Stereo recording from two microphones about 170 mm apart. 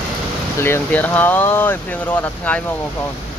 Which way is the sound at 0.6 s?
10° left (ahead or behind).